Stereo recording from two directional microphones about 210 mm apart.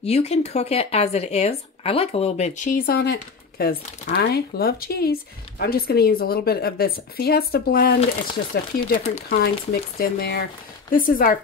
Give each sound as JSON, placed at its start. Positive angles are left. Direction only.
{"t": 0.0, "sound": "speech", "side_deg": 30}
{"t": 8.0, "sound": "speech", "side_deg": 30}
{"t": 9.1, "sound": "speech", "side_deg": 45}